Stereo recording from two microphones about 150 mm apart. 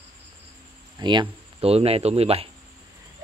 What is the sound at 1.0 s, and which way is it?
Speech, 30° right (ahead or behind).